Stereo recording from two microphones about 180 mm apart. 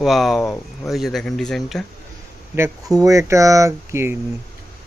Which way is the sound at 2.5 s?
15° right (ahead or behind).